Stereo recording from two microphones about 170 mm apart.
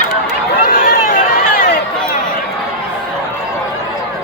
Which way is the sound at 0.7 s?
55° left (ahead or behind).